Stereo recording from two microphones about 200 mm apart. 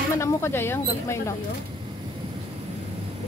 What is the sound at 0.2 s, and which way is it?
Speech, 10° left (ahead or behind).